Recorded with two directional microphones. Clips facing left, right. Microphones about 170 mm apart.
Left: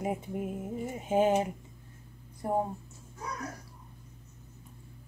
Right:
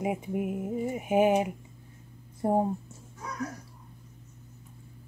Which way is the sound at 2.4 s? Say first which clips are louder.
Right 5 dB; 25° right (ahead or behind).